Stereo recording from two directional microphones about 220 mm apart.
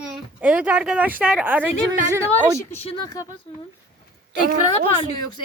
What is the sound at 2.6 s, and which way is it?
Speech, 10° left (ahead or behind).